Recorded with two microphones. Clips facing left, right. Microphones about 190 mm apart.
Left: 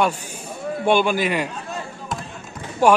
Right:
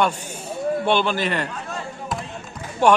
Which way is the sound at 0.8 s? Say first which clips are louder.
Left 5 dB; 10° left (ahead or behind).